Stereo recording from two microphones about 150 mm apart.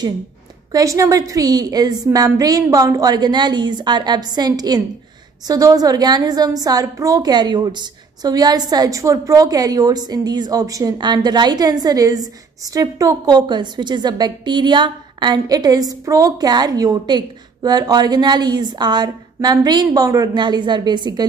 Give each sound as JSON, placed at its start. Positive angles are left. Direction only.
{"t": 0.7, "sound": "a woman's voice", "side_deg": -20}